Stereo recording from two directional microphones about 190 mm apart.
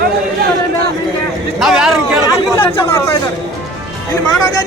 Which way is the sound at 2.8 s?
15° left (ahead or behind).